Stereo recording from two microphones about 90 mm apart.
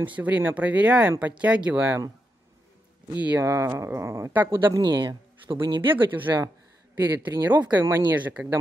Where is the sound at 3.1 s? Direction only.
20° right (ahead or behind).